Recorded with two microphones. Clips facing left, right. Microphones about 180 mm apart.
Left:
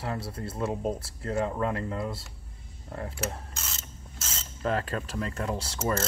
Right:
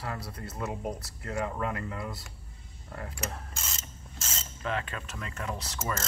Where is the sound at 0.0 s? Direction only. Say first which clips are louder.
Left 4 dB; 25° left (ahead or behind).